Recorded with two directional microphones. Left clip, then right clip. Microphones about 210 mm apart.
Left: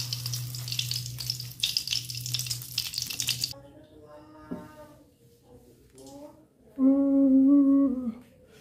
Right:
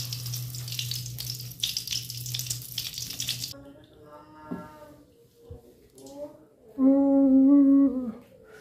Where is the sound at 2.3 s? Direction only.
5° left (ahead or behind).